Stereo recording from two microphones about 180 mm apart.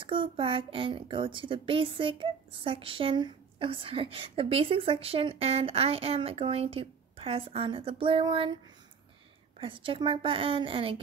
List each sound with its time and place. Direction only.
0.0 s a woman's voice: 30° right (ahead or behind)
9.6 s a woman's voice: 30° right (ahead or behind)